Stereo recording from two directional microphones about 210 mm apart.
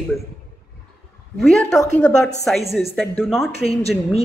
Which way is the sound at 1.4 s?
Centre (ahead or behind).